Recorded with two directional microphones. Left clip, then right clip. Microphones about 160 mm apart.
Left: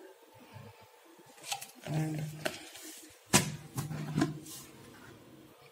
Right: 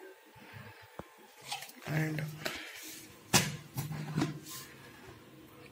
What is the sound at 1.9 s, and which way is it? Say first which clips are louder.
Speech: right 2 dB; 5° left (ahead or behind).